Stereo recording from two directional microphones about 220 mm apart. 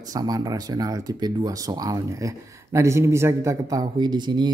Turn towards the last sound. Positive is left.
turn(degrees=-20)  # may be behind; listen again after turning